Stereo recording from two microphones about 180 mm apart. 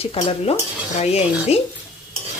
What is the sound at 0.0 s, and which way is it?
Speech, 30° left (ahead or behind).